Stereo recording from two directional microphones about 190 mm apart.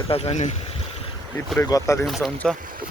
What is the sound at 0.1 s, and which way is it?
Speech, 30° left (ahead or behind).